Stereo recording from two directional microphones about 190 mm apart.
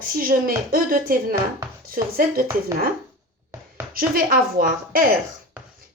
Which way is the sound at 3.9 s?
50° right (ahead or behind).